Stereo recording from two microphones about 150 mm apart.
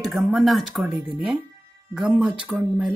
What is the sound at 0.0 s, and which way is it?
A woman's voice, centre (ahead or behind).